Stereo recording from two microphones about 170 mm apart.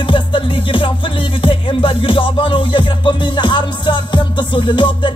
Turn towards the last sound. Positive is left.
turn(degrees=30)  # may be behind; listen again after turning